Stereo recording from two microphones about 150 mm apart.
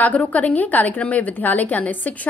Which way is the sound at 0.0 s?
10° left (ahead or behind).